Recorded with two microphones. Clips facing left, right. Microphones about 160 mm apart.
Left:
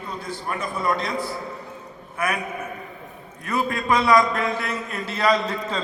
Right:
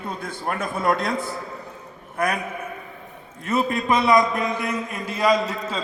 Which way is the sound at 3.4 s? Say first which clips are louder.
Right 2 dB; 25° right (ahead or behind).